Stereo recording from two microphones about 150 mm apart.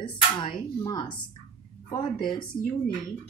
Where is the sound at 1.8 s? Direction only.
30° left (ahead or behind).